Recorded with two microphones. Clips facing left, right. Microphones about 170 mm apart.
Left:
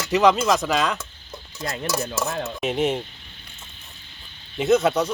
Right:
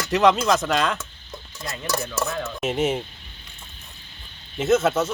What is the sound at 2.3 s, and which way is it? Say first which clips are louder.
Speech: left 1 dB; 35° left (ahead or behind).